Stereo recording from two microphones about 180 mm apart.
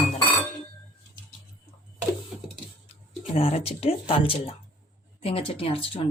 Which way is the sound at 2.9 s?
35° left (ahead or behind).